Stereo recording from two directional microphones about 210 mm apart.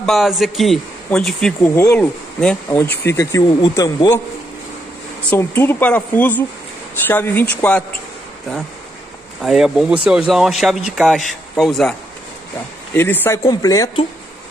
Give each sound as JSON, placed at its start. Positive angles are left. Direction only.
{"t": 0.0, "sound": "a man's voice", "side_deg": 0}
{"t": 5.3, "sound": "speech", "side_deg": 10}
{"t": 9.4, "sound": "a man's voice", "side_deg": 0}
{"t": 12.9, "sound": "speech", "side_deg": 10}